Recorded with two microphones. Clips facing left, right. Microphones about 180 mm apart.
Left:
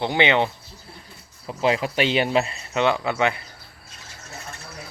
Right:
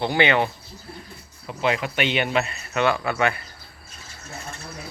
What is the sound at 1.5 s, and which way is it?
Speech, 30° left (ahead or behind).